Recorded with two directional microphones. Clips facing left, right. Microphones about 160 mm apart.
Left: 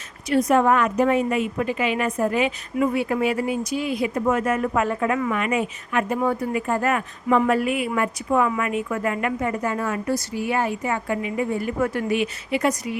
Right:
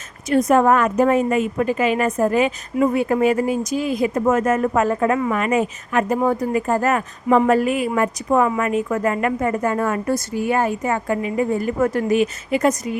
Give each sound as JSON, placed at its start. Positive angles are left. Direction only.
{"t": 0.3, "sound": "a woman's voice", "side_deg": -45}